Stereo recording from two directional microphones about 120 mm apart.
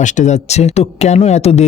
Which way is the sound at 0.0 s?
80° left.